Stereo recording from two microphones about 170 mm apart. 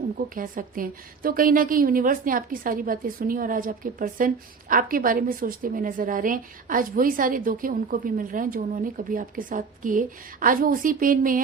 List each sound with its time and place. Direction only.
0.3 s a woman's voice: 55° right (ahead or behind)